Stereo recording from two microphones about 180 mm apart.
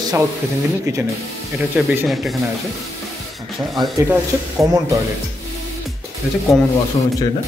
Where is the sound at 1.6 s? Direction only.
Centre (ahead or behind).